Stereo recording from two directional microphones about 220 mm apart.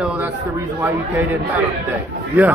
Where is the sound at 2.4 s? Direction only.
5° right (ahead or behind).